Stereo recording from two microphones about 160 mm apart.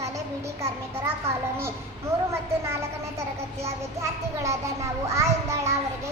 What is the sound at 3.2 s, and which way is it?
A child's voice, 20° right (ahead or behind).